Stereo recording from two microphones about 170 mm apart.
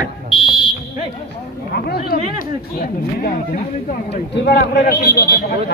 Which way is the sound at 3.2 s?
50° left (ahead or behind).